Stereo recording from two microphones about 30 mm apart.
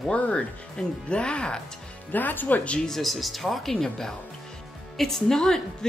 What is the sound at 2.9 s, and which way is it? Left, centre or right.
Speech, centre.